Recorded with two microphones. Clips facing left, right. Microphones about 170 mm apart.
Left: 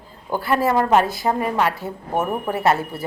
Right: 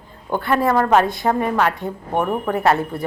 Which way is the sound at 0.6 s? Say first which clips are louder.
Right 1 dB; 25° left (ahead or behind).